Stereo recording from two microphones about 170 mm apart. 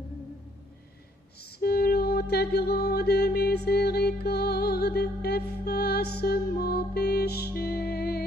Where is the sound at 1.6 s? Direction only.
65° left (ahead or behind).